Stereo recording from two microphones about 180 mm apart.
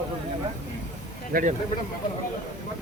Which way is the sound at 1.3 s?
50° right (ahead or behind).